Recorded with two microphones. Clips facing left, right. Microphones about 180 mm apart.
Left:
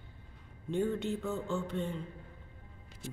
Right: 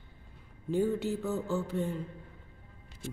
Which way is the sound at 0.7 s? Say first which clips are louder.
Right 3 dB; 5° right (ahead or behind).